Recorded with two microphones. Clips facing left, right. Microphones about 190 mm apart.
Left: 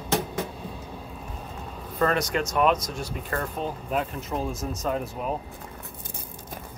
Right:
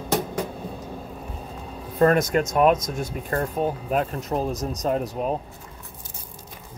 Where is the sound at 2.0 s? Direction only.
45° right (ahead or behind).